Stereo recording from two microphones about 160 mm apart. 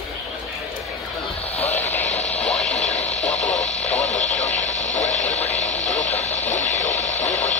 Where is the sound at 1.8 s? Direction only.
10° left (ahead or behind).